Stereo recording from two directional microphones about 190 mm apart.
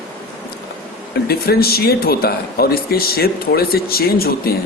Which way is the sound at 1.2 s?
55° left (ahead or behind).